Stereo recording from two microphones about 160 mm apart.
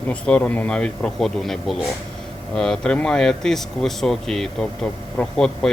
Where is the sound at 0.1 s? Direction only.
10° left (ahead or behind).